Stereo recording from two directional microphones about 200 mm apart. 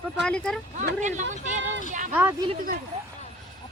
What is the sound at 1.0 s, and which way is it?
Speech, 35° right (ahead or behind).